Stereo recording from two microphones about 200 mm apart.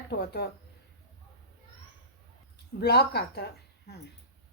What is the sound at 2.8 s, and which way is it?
Speech, 55° left (ahead or behind).